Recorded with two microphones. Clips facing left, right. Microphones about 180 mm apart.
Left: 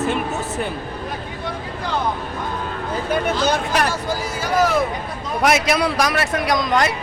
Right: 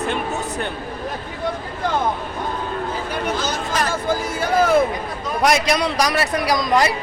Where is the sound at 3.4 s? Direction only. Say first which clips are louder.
Left 4 dB; 60° left (ahead or behind).